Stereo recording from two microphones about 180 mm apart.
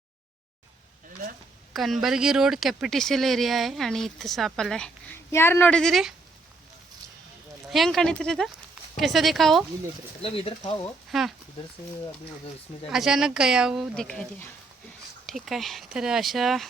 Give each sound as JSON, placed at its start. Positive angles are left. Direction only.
{"t": 1.7, "sound": "speech", "side_deg": 0}
{"t": 7.7, "sound": "speech", "side_deg": 0}
{"t": 10.2, "sound": "speech", "side_deg": 30}
{"t": 11.1, "sound": "speech", "side_deg": 0}
{"t": 12.9, "sound": "speech", "side_deg": 0}